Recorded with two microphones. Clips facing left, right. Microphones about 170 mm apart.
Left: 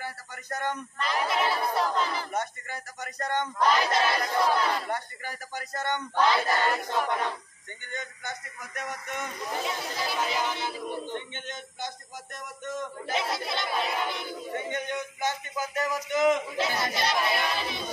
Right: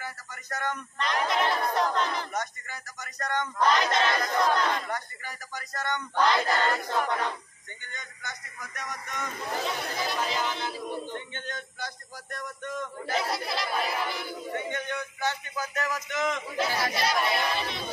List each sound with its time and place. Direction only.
0.0 s a sound: 30° left (ahead or behind)
0.9 s speech: 5° left (ahead or behind)
2.3 s speech: 30° left (ahead or behind)
3.5 s speech: 5° left (ahead or behind)
4.7 s speech: 30° left (ahead or behind)
6.1 s speech: 5° left (ahead or behind)
7.9 s speech: 25° left (ahead or behind)
10.0 s speech: 5° left (ahead or behind)
11.1 s speech: 20° left (ahead or behind)
13.1 s speech: centre (ahead or behind)
14.5 s speech: 20° left (ahead or behind)
16.5 s speech: centre (ahead or behind)